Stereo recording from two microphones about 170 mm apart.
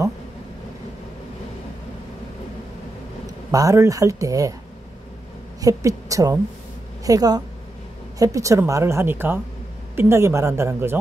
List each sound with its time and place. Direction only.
3.5 s speech: 20° right (ahead or behind)
5.6 s a woman's voice: 20° right (ahead or behind)